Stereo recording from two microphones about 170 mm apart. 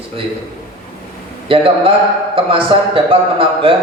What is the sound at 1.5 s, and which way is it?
A man's voice, 30° right (ahead or behind).